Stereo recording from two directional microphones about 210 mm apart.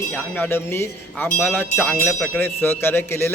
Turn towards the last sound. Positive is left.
turn(degrees=10)  # may be behind; listen again after turning